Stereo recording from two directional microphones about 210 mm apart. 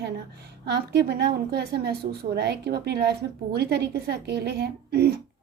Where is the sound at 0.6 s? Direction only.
50° right (ahead or behind).